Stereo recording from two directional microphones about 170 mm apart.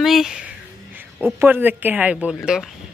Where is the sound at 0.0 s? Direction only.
Centre (ahead or behind).